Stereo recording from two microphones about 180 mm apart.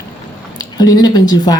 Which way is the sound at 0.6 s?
20° left (ahead or behind).